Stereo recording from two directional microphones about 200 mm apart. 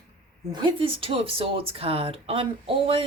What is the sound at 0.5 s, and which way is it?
Speech, 25° right (ahead or behind).